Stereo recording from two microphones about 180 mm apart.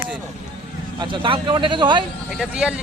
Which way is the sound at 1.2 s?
25° right (ahead or behind).